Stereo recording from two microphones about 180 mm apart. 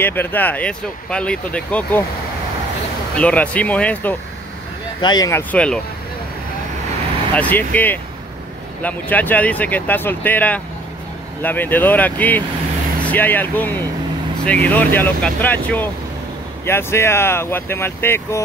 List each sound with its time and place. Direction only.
0.0 s speech: 10° left (ahead or behind)
3.2 s speech: 5° left (ahead or behind)
5.0 s speech: 20° left (ahead or behind)
5.5 s speech: 5° left (ahead or behind)
7.3 s speech: 10° left (ahead or behind)